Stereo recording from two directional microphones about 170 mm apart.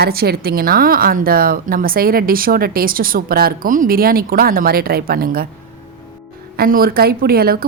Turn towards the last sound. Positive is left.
turn(degrees=-60)  # may be behind; listen again after turning